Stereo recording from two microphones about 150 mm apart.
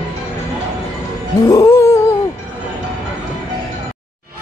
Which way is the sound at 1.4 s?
20° left (ahead or behind).